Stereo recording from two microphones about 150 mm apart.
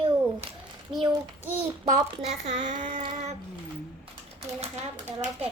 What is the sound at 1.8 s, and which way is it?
Speech, 55° right (ahead or behind).